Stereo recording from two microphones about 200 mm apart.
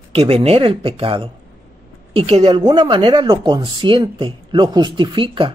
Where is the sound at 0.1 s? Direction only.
30° right (ahead or behind).